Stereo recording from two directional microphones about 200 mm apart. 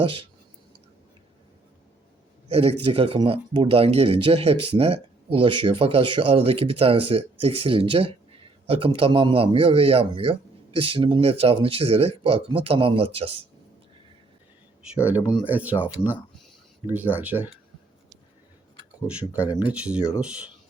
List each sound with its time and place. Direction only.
0.0 s speech: 25° right (ahead or behind)
2.5 s a man's voice: 30° right (ahead or behind)
15.4 s speech: 10° right (ahead or behind)
16.8 s speech: 10° right (ahead or behind)
19.0 s speech: 5° right (ahead or behind)